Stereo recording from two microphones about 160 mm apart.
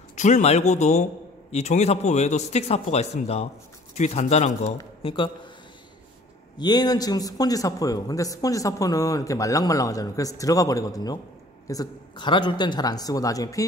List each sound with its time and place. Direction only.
0.1 s a man's voice: 45° left (ahead or behind)
5.0 s a man's voice: 30° left (ahead or behind)
6.6 s speech: 25° left (ahead or behind)